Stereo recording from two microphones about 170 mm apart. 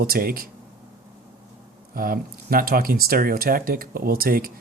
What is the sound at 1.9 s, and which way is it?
Speech, 55° right (ahead or behind).